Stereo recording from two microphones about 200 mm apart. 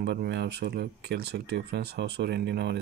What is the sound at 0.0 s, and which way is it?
Speech, 55° right (ahead or behind).